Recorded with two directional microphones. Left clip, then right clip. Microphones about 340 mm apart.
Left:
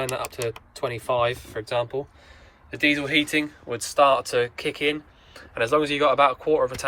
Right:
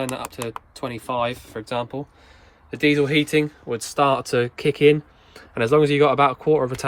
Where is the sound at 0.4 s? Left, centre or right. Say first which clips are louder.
Left 2 dB; centre.